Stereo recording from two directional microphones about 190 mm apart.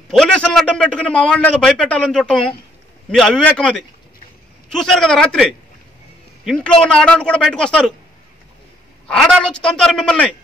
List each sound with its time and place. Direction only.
0.1 s a man's voice: 5° left (ahead or behind)
9.0 s a man's voice: 5° left (ahead or behind)